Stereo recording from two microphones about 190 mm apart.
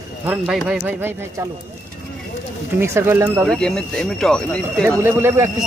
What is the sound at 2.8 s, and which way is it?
Speech, 10° right (ahead or behind).